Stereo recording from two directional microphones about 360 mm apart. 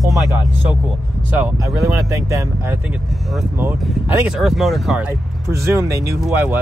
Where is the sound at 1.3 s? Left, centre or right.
Centre.